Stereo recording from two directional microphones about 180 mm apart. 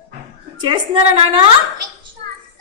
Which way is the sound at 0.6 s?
30° right (ahead or behind).